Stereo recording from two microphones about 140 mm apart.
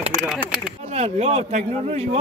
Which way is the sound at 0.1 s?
Centre (ahead or behind).